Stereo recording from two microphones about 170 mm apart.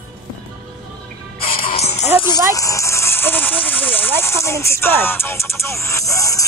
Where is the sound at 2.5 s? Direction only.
20° left (ahead or behind).